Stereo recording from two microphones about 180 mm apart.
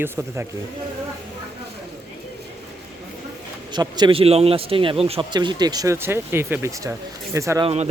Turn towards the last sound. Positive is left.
turn(degrees=-35)  # may be behind; listen again after turning